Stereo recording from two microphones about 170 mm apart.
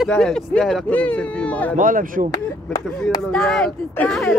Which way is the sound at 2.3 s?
20° left (ahead or behind).